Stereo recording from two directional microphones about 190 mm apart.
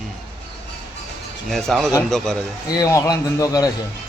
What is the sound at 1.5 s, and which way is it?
Speech, centre (ahead or behind).